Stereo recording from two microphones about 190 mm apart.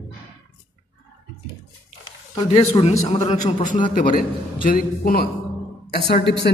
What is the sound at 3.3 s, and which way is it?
A man's voice, 40° left (ahead or behind).